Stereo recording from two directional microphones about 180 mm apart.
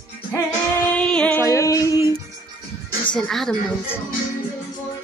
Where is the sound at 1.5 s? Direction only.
15° left (ahead or behind).